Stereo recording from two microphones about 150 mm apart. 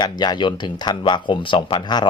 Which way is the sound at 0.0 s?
30° left (ahead or behind).